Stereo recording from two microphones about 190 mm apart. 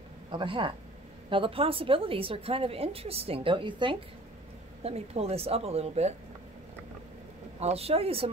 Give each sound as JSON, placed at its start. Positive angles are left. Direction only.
{"t": 0.3, "sound": "a woman's voice", "side_deg": -25}
{"t": 7.6, "sound": "speech", "side_deg": -30}